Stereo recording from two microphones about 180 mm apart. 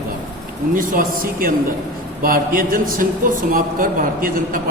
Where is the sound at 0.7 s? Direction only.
50° right (ahead or behind).